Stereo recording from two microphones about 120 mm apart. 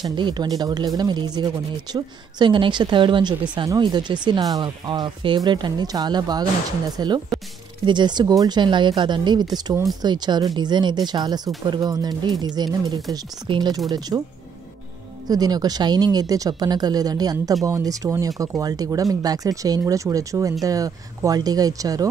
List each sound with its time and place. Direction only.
0.0 s speech: 40° right (ahead or behind)
15.2 s speech: 30° right (ahead or behind)